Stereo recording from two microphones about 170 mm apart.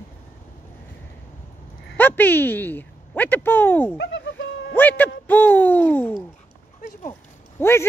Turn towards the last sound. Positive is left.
turn(degrees=15)  # may be behind; listen again after turning